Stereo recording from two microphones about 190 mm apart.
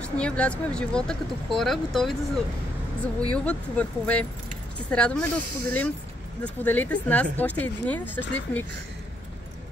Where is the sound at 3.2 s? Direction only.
5° left (ahead or behind).